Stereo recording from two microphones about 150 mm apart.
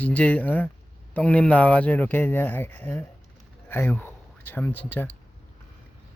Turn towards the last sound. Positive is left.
turn(degrees=10)  # may be behind; listen again after turning